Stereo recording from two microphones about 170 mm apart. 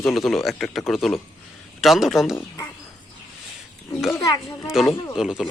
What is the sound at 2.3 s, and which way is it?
Speech, 15° left (ahead or behind).